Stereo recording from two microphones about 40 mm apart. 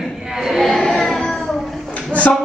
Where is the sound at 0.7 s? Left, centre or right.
Centre.